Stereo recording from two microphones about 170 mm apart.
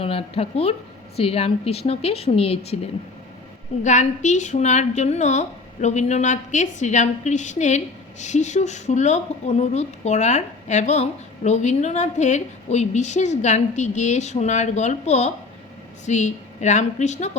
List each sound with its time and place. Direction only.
0.0 s a woman's voice: 35° left (ahead or behind)
3.8 s speech: 45° left (ahead or behind)